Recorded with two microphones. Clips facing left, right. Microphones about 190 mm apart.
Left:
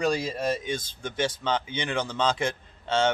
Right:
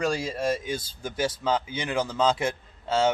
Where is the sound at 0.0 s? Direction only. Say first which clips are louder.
Even; centre (ahead or behind).